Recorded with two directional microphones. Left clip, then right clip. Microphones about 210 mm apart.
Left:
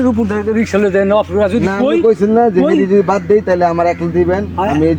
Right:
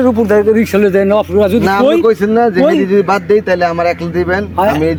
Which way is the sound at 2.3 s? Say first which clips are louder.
Even; 15° right (ahead or behind).